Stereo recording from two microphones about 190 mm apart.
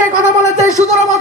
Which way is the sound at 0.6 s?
15° left (ahead or behind).